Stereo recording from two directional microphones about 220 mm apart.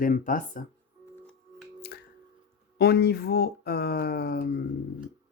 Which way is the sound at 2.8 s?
45° left (ahead or behind).